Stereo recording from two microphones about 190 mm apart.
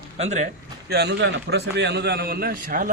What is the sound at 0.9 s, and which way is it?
A man's voice, 60° right (ahead or behind).